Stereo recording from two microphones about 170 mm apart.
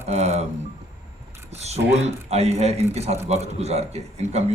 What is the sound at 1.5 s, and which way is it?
A man's voice, 40° right (ahead or behind).